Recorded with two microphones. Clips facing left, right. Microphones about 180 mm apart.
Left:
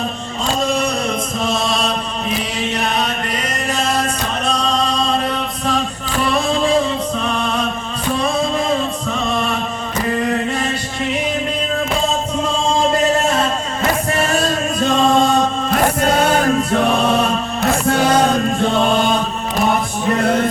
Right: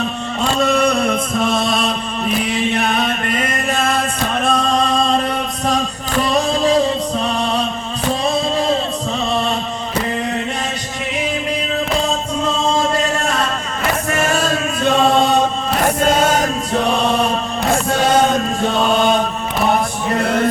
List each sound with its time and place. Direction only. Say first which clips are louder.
0.6 s music: right 5 dB; 60° right (ahead or behind)
4.4 s male singing: right 2 dB; 50° right (ahead or behind)
6.3 s music: right 1 dB; 40° right (ahead or behind)